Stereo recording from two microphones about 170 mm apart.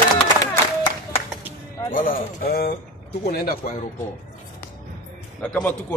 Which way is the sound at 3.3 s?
60° left (ahead or behind).